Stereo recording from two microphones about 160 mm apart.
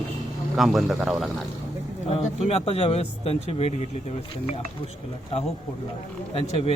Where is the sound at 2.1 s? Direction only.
40° left (ahead or behind).